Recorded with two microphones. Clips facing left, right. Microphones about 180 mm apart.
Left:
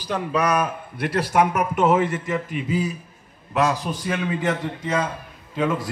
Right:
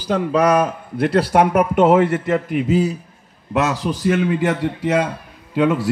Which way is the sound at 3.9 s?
70° right (ahead or behind).